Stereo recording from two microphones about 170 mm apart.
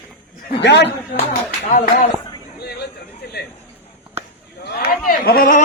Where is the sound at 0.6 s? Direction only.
90° left.